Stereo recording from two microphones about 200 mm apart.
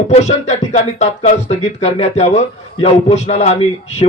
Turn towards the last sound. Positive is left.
turn(degrees=35)  # may be behind; listen again after turning